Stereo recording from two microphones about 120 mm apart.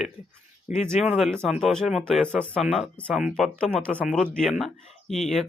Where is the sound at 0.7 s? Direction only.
10° right (ahead or behind).